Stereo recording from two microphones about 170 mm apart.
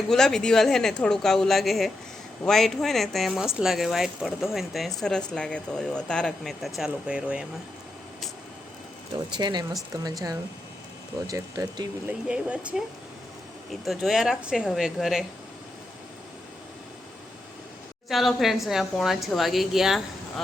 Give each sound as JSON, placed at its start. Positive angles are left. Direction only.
{"t": 0.1, "sound": "speech", "side_deg": 5}
{"t": 9.4, "sound": "speech", "side_deg": -25}
{"t": 12.3, "sound": "speech", "side_deg": -5}
{"t": 18.1, "sound": "speech", "side_deg": 0}